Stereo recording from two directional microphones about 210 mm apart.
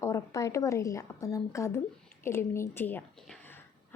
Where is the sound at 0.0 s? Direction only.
15° left (ahead or behind).